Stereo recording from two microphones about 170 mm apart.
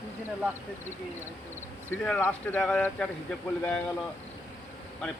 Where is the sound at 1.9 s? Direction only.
10° left (ahead or behind).